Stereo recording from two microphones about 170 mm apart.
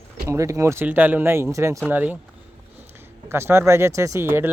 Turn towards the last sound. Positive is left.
turn(degrees=-15)  # may be behind; listen again after turning